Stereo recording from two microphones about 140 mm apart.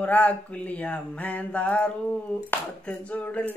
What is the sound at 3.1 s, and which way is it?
Mantra, 10° left (ahead or behind).